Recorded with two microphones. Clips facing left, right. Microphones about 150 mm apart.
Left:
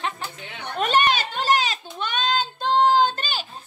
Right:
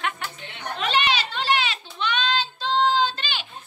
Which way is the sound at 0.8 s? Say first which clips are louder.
Left 3 dB; 45° left (ahead or behind).